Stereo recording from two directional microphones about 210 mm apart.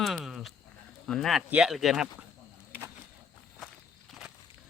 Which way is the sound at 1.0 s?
Centre (ahead or behind).